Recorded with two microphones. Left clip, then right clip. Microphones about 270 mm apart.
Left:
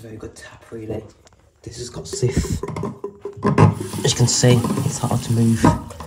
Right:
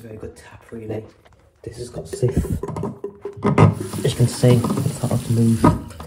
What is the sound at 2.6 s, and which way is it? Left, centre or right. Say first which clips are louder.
Beatboxing: even; centre.